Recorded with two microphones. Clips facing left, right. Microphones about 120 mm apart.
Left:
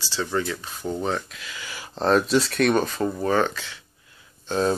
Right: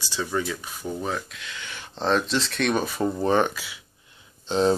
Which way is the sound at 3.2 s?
20° right (ahead or behind).